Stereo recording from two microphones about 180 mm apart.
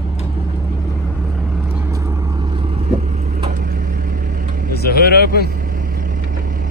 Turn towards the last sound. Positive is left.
turn(degrees=60)  # may be behind; listen again after turning